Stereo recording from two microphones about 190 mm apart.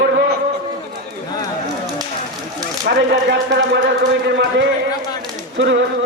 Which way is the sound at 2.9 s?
55° right (ahead or behind).